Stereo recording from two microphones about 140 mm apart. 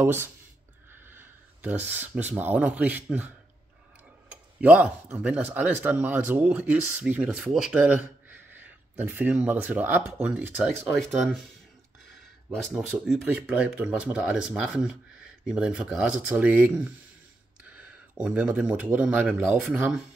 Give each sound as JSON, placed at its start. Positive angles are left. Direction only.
{"t": 0.0, "sound": "speech", "side_deg": -15}
{"t": 12.5, "sound": "speech", "side_deg": 5}